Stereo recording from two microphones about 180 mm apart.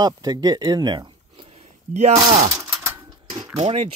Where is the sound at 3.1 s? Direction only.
30° right (ahead or behind).